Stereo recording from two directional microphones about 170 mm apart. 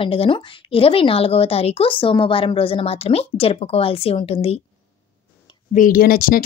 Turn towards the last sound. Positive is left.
turn(degrees=55)  # may be behind; listen again after turning